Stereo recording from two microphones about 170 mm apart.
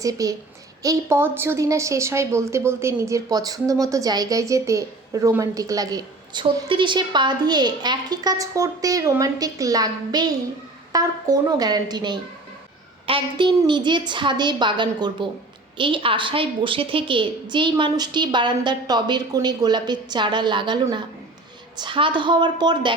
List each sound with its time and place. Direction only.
0.0 s a woman's voice: 20° right (ahead or behind)
21.8 s a woman's voice: 30° right (ahead or behind)